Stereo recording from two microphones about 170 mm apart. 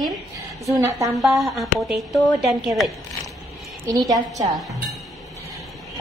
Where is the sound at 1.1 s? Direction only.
Centre (ahead or behind).